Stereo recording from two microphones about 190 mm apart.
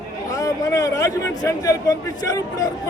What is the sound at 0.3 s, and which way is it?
Speech, 15° left (ahead or behind).